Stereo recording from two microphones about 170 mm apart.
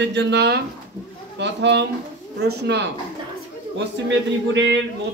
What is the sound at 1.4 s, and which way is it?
Speech, 90° right.